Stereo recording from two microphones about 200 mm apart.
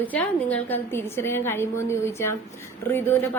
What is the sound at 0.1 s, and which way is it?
A woman's voice, 10° left (ahead or behind).